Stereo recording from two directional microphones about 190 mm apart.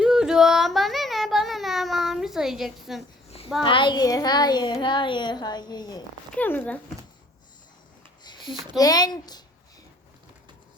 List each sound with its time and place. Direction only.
0.0 s child singing: 5° right (ahead or behind)
3.6 s speech: 25° left (ahead or behind)
6.3 s speech: 10° left (ahead or behind)
8.2 s a sound: 25° left (ahead or behind)
8.8 s speech: 20° left (ahead or behind)